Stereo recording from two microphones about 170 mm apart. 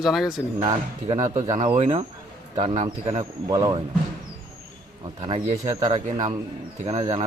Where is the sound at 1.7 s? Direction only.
40° right (ahead or behind); by 3.8 s 25° right (ahead or behind).